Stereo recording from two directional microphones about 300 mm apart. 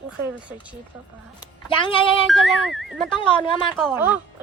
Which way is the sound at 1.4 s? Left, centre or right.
Centre.